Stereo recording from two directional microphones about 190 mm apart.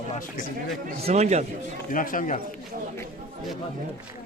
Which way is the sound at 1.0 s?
35° right (ahead or behind).